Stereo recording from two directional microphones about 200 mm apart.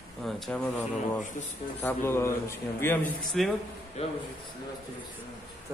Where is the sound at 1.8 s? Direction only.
10° left (ahead or behind).